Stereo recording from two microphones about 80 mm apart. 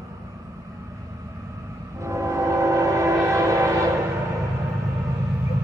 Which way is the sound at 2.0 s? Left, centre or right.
Right.